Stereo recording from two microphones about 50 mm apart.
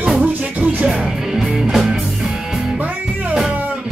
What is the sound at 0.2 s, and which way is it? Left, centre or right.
Music, right.